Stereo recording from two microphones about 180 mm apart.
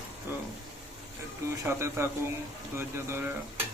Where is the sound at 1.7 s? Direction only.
15° right (ahead or behind).